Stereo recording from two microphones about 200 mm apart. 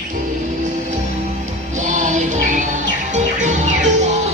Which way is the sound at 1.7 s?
40° right (ahead or behind).